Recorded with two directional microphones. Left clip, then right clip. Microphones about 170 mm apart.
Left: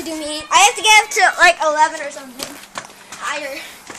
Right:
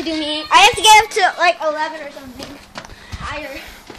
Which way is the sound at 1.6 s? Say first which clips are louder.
Left 5 dB; 5° left (ahead or behind).